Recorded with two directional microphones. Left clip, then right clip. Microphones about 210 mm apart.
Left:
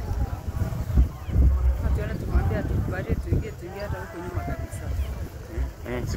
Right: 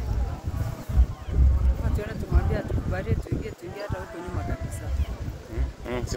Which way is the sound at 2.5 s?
60° right (ahead or behind).